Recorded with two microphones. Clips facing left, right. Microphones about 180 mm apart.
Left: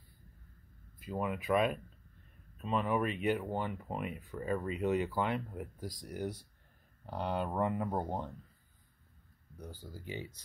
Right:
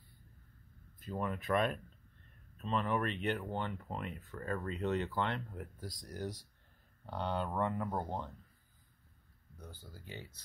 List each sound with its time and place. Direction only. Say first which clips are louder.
0.9 s speech: left 2 dB; 10° left (ahead or behind)
7.1 s speech: left 2 dB; 10° left (ahead or behind)
9.6 s speech: left 5 dB; 15° left (ahead or behind)